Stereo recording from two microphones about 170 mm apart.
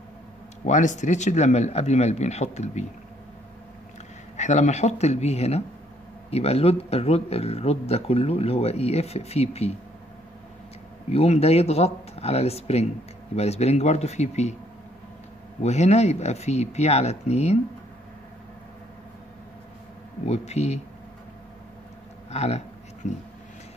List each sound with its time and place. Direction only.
0.7 s speech: 45° left (ahead or behind)
4.4 s speech: 45° left (ahead or behind)
11.1 s speech: 40° left (ahead or behind)
15.6 s speech: 40° left (ahead or behind)
20.2 s speech: 40° left (ahead or behind)
22.3 s speech: 40° left (ahead or behind)